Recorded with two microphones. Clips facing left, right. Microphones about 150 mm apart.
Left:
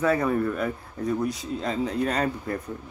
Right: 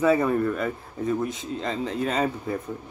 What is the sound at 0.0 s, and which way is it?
A man's voice, 5° right (ahead or behind).